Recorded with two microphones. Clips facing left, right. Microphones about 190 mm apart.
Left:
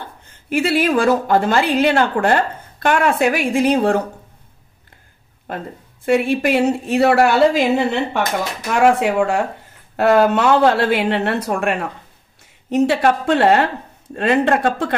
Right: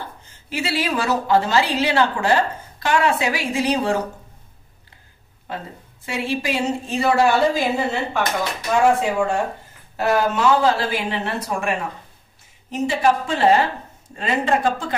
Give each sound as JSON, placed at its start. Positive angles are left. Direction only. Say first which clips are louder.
{"t": 0.5, "sound": "a woman's voice", "louder": "left 7 dB", "side_deg": 55}
{"t": 5.5, "sound": "a woman's voice", "louder": "left 3 dB", "side_deg": 50}
{"t": 9.9, "sound": "a woman's voice", "louder": "left 6 dB", "side_deg": 65}